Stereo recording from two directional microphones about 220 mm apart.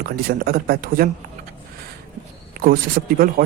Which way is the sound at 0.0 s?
45° right (ahead or behind).